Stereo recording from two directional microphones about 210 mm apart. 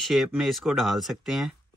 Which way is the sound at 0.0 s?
Centre (ahead or behind).